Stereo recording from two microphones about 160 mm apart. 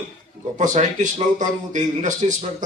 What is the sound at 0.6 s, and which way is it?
Speech, 50° right (ahead or behind).